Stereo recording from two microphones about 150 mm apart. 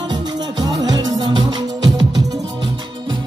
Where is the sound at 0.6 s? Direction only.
25° right (ahead or behind).